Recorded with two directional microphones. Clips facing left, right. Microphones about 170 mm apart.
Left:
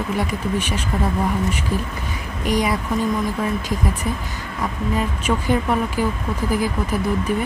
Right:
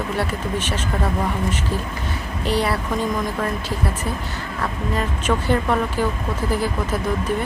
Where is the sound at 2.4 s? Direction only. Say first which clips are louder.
Left 1 dB; 15° left (ahead or behind).